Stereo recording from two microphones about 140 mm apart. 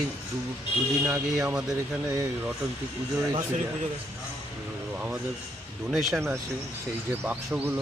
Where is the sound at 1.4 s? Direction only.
5° right (ahead or behind).